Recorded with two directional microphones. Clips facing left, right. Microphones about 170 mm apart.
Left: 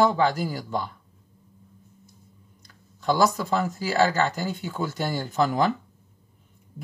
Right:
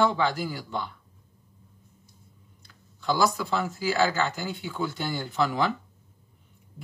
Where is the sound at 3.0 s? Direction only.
45° left (ahead or behind).